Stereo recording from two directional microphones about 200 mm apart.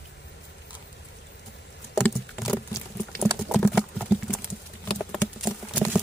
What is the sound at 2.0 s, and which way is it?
Patter, 10° left (ahead or behind).